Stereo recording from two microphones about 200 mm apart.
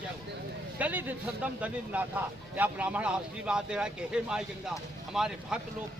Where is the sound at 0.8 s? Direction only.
10° right (ahead or behind).